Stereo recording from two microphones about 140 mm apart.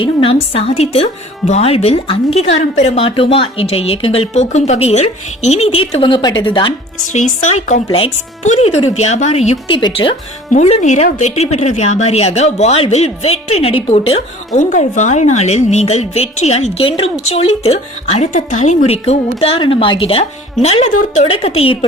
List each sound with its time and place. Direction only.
0.0 s a woman's voice: 40° left (ahead or behind)
7.1 s a woman's voice: 55° left (ahead or behind)
9.7 s a woman's voice: 35° left (ahead or behind)
10.5 s a woman's voice: 55° left (ahead or behind)
14.5 s a woman's voice: 65° left (ahead or behind); by 21.8 s 40° left (ahead or behind)